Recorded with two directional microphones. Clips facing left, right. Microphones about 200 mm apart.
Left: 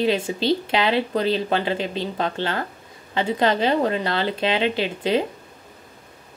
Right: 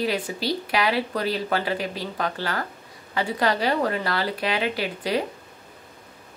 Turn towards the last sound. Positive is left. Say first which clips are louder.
# left 4 dB
turn(degrees=25)  # may be behind; listen again after turning